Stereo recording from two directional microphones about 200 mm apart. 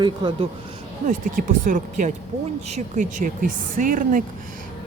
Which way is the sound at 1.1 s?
40° right (ahead or behind).